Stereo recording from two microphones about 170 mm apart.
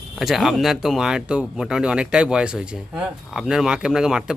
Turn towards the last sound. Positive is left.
turn(degrees=-5)  # may be behind; listen again after turning